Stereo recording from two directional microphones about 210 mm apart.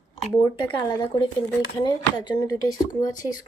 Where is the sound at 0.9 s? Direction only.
20° left (ahead or behind).